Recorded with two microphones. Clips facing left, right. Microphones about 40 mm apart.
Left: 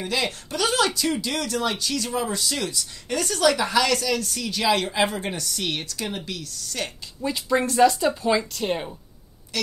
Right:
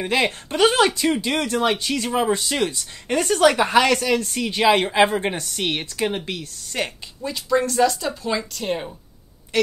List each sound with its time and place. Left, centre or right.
0.0 s speech: right
7.2 s speech: centre